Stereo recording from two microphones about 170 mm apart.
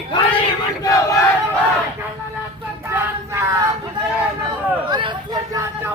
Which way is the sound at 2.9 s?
15° right (ahead or behind).